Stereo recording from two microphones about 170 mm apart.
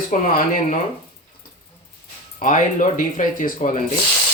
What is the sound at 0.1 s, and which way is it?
Speech, 50° left (ahead or behind).